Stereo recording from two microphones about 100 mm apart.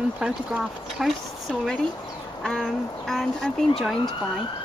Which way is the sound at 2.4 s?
5° left (ahead or behind).